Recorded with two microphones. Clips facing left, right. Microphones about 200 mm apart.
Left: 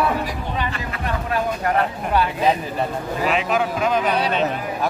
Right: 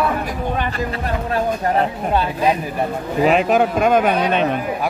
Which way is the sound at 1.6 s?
30° right (ahead or behind).